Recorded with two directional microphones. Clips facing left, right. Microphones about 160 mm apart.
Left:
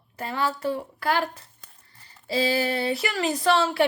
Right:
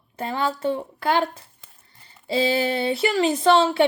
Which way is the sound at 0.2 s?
25° right (ahead or behind).